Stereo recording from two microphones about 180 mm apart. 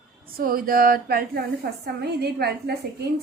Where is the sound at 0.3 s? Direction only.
55° right (ahead or behind).